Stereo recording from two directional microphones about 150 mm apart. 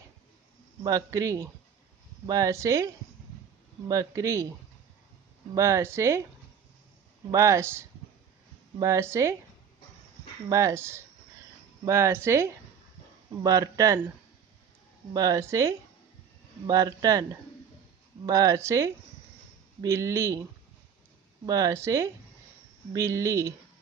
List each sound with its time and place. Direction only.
0.8 s a man's voice: 20° right (ahead or behind)
3.9 s a man's voice: 25° right (ahead or behind)
5.5 s a man's voice: 20° right (ahead or behind)
7.2 s a man's voice: 20° right (ahead or behind)
10.5 s a man's voice: 20° right (ahead or behind)
15.1 s a man's voice: 20° right (ahead or behind)
21.5 s a man's voice: 20° right (ahead or behind)